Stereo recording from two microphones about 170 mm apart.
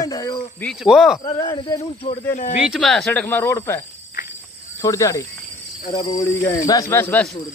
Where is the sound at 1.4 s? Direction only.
30° left (ahead or behind).